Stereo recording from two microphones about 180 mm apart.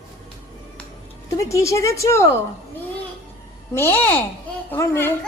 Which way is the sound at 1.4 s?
15° left (ahead or behind).